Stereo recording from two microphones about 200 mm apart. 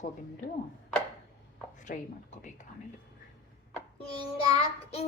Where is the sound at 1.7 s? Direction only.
40° left (ahead or behind).